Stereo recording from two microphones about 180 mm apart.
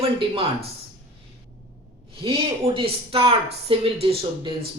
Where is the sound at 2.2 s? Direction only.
30° right (ahead or behind).